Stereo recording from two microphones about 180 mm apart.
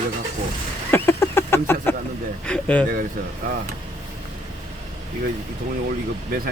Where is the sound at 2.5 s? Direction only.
5° left (ahead or behind).